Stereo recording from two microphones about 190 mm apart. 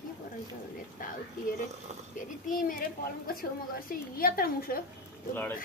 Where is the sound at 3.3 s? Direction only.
50° left (ahead or behind).